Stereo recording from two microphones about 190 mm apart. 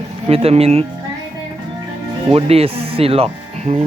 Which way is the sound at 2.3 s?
30° right (ahead or behind).